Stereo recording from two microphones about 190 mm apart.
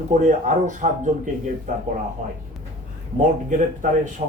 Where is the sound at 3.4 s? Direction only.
40° right (ahead or behind).